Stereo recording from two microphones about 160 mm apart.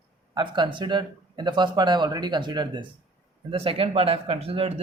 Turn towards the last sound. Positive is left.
turn(degrees=-40)  # may be behind; listen again after turning